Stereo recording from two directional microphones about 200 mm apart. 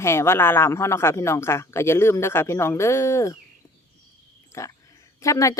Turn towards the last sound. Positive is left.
turn(degrees=15)  # may be behind; listen again after turning